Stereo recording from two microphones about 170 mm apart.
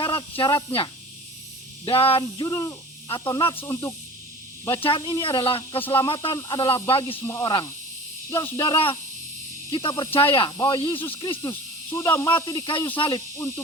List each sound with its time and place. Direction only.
0.0 s speech: 30° left (ahead or behind)
2.5 s speech: 20° left (ahead or behind)
4.8 s speech: 30° left (ahead or behind)
11.9 s speech: 15° left (ahead or behind)